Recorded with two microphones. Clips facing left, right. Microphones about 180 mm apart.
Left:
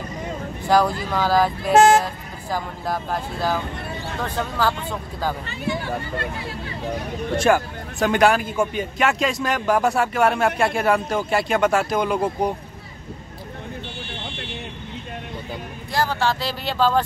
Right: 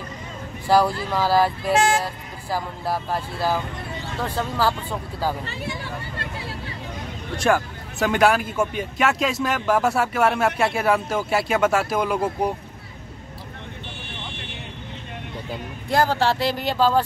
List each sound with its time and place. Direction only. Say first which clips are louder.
0.7 s speech: even; 5° right (ahead or behind)
1.7 s speech: left 9 dB; 45° left (ahead or behind)
2.5 s speech: even; 5° right (ahead or behind)
7.3 s speech: left 2 dB; centre (ahead or behind)
16.1 s speech: right 2 dB; 35° right (ahead or behind)
16.3 s speech: right 4 dB; 55° right (ahead or behind)
16.7 s speech: left 1 dB; 10° right (ahead or behind)